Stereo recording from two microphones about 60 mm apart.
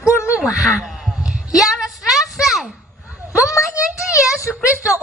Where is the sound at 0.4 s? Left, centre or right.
Centre.